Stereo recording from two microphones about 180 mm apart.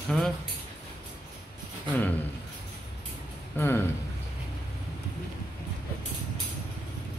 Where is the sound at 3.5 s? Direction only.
15° left (ahead or behind).